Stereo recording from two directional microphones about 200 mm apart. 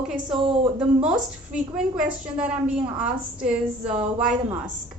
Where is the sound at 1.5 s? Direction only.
5° right (ahead or behind).